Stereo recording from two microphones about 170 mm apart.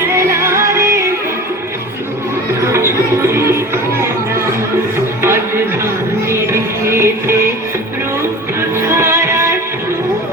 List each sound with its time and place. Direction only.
0.4 s music: 15° right (ahead or behind)
2.7 s music: 15° right (ahead or behind)
6.3 s music: 15° right (ahead or behind)
8.8 s music: 15° right (ahead or behind)